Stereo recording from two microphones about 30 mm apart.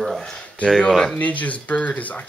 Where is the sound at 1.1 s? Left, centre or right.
Left.